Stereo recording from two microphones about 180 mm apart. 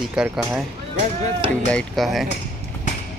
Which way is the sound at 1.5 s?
5° left (ahead or behind).